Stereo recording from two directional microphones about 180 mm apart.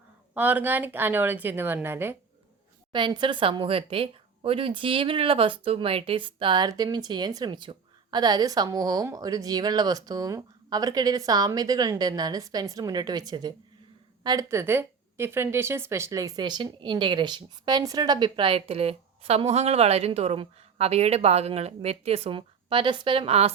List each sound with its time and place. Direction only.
0.3 s a woman's voice: 10° right (ahead or behind)
2.9 s speech: 25° right (ahead or behind)